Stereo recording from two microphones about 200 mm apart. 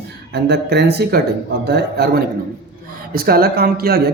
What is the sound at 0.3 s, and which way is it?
A man's voice, 55° right (ahead or behind).